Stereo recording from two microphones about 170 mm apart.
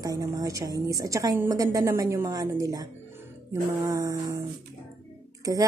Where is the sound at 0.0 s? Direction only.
20° right (ahead or behind).